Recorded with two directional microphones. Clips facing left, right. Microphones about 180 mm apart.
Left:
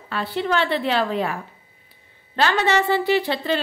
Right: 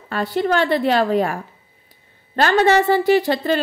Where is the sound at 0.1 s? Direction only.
45° right (ahead or behind).